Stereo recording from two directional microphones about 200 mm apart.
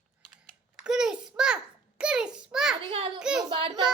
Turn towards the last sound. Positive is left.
turn(degrees=-25)  # may be behind; listen again after turning